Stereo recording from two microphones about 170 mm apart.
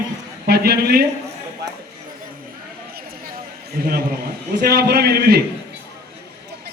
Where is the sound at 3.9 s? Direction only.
60° right (ahead or behind).